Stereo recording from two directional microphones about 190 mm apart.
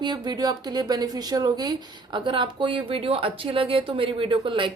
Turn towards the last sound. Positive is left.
turn(degrees=-25)  # may be behind; listen again after turning